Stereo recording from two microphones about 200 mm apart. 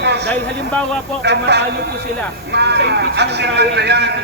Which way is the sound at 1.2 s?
60° right (ahead or behind).